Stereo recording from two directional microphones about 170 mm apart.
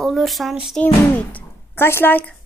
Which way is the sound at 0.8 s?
10° left (ahead or behind).